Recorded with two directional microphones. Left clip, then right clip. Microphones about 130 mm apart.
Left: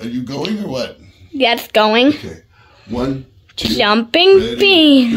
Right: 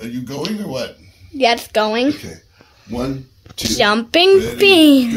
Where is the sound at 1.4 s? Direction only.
5° left (ahead or behind).